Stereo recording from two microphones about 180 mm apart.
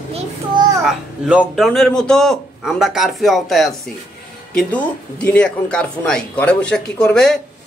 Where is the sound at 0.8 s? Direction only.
5° right (ahead or behind).